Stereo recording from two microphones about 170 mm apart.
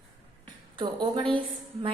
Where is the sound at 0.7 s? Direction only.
30° right (ahead or behind).